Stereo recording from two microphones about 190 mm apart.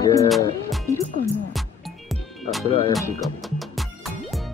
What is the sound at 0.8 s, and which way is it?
Music, 15° left (ahead or behind).